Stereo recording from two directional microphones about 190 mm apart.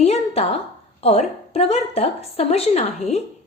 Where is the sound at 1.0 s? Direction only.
35° left (ahead or behind).